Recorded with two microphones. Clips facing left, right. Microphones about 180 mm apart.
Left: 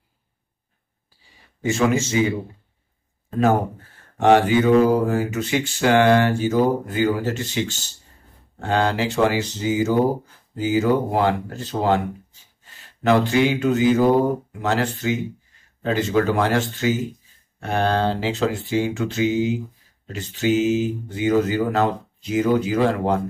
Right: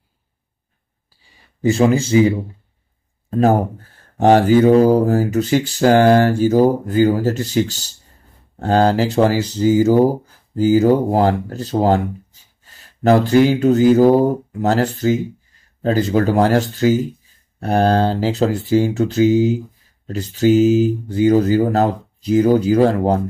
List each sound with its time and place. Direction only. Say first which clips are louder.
1.6 s speech: right 5 dB; 35° right (ahead or behind)